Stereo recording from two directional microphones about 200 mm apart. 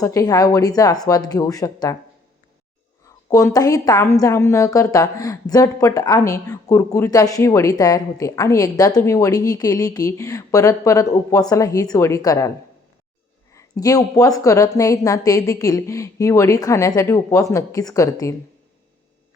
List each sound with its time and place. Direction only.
0.0 s a woman's voice: 15° left (ahead or behind)
3.2 s a woman's voice: 15° left (ahead or behind)